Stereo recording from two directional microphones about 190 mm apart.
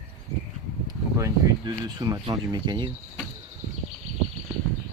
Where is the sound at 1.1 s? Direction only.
20° right (ahead or behind).